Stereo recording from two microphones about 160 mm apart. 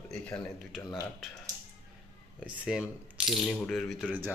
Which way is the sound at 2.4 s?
5° right (ahead or behind).